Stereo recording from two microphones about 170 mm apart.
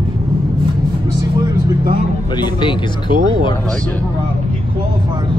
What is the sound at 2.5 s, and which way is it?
Music, 30° left (ahead or behind).